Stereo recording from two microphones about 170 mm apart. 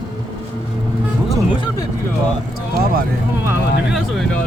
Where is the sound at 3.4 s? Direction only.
15° right (ahead or behind).